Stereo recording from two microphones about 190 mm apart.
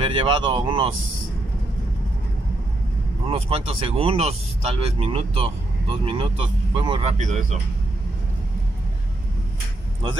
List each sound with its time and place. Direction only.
0.0 s speech: 25° right (ahead or behind)
3.3 s speech: 30° right (ahead or behind)